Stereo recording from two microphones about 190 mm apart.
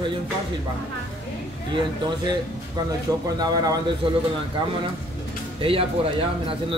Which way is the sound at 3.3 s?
20° right (ahead or behind).